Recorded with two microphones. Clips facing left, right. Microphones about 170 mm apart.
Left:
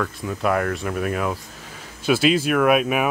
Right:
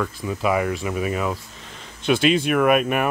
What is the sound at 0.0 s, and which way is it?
Speech, 5° right (ahead or behind).